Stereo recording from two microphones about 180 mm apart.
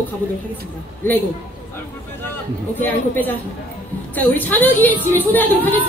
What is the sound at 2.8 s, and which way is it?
A woman's voice, 10° left (ahead or behind).